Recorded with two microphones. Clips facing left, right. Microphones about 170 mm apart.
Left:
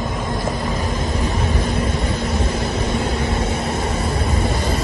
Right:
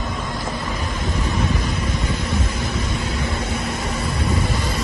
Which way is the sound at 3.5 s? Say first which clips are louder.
Left 3 dB; 30° left (ahead or behind).